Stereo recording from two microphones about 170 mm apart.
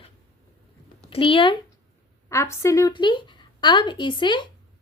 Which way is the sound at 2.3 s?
15° left (ahead or behind).